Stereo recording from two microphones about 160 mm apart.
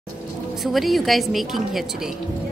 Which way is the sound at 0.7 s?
Centre (ahead or behind).